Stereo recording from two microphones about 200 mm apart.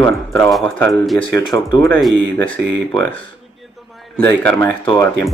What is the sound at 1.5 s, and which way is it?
Speech, 15° left (ahead or behind).